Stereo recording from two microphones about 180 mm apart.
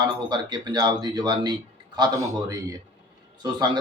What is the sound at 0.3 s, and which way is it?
Speech, 25° right (ahead or behind).